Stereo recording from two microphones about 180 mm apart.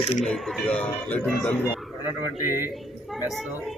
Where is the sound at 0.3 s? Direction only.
Centre (ahead or behind).